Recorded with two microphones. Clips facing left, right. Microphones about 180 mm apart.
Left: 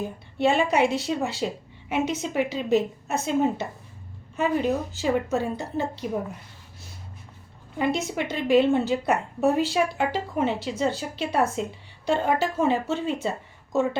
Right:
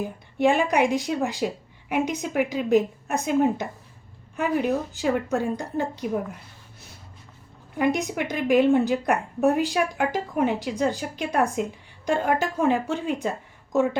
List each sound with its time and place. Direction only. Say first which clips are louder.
0.0 s a woman's voice: right 2 dB; 15° right (ahead or behind)
7.8 s a woman's voice: right 2 dB; 15° right (ahead or behind)